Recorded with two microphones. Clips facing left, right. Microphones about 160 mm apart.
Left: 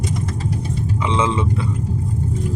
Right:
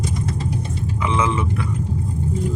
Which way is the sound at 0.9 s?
25° left (ahead or behind).